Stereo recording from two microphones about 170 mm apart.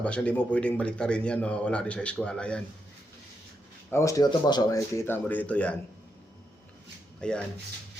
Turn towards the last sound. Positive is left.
turn(degrees=5)  # may be behind; listen again after turning